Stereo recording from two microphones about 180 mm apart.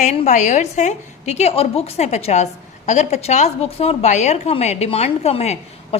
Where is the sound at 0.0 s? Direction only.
40° left (ahead or behind).